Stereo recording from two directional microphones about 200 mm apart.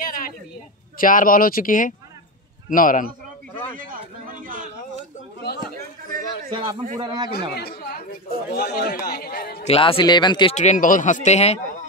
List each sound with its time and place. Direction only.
0.0 s a sound: 45° left (ahead or behind)
0.9 s a man's voice: 45° left (ahead or behind)
3.7 s a man's voice: 45° right (ahead or behind)
6.5 s a man's voice: 25° right (ahead or behind)
7.5 s a man's voice: 50° left (ahead or behind)
9.7 s speech: 25° left (ahead or behind)
10.5 s speech: 35° left (ahead or behind)